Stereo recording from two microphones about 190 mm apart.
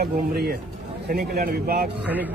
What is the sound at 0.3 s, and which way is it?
Speech, 55° right (ahead or behind).